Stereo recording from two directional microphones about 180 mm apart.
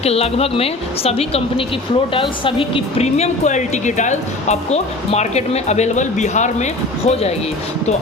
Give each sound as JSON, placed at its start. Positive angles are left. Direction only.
{"t": 0.0, "sound": "a woman's voice", "side_deg": 35}